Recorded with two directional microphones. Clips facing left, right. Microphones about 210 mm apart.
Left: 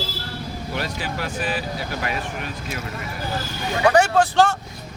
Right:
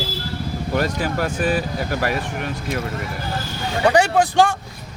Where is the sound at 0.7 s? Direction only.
45° right (ahead or behind).